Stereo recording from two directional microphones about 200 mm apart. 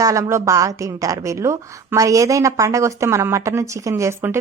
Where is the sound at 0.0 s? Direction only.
15° right (ahead or behind).